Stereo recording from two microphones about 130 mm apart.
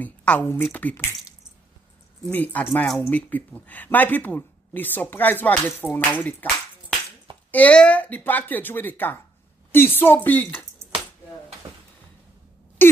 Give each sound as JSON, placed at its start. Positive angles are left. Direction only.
{"t": 0.0, "sound": "speech", "side_deg": 10}
{"t": 2.3, "sound": "speech", "side_deg": 15}
{"t": 7.5, "sound": "speech", "side_deg": 10}
{"t": 12.8, "sound": "a sound", "side_deg": 15}